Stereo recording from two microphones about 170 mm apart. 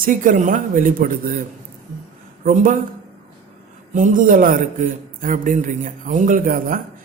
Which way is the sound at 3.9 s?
50° right (ahead or behind).